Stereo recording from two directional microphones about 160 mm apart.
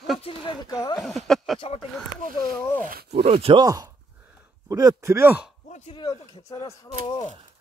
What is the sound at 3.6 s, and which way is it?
Speech, 25° right (ahead or behind).